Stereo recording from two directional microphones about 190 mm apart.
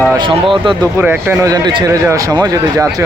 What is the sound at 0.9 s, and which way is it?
Speech, 10° right (ahead or behind).